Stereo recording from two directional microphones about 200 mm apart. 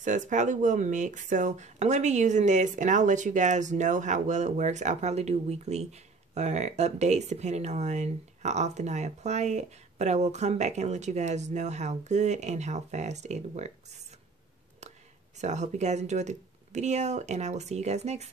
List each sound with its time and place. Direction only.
0.0 s speech: 40° right (ahead or behind)
15.4 s speech: 35° right (ahead or behind)